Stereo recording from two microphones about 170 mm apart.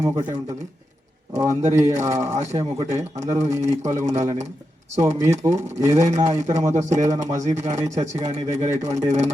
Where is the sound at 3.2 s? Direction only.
15° right (ahead or behind).